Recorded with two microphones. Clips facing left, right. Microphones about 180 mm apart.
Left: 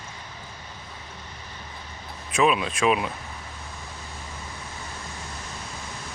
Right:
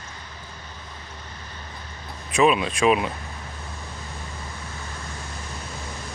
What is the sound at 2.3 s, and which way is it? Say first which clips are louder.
Speech: right 3 dB; centre (ahead or behind).